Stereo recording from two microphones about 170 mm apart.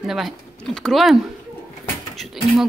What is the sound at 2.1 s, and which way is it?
Mechanisms, centre (ahead or behind).